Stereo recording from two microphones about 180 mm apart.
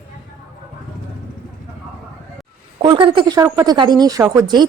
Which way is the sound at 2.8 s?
25° right (ahead or behind).